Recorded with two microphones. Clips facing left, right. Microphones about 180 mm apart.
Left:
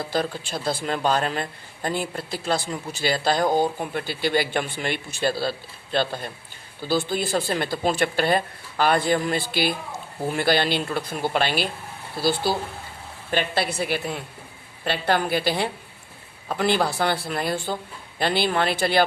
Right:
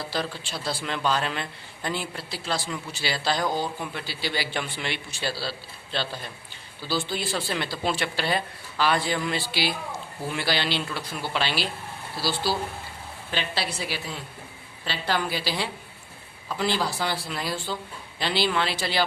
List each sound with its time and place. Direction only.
0.0 s a man's voice: 50° left (ahead or behind)